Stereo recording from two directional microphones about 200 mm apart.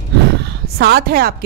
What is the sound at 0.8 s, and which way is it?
Speech, 50° right (ahead or behind).